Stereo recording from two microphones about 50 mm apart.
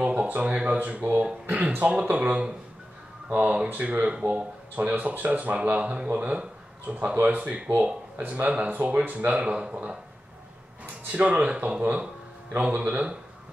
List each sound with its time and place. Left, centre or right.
0.1 s speech: right
11.1 s speech: right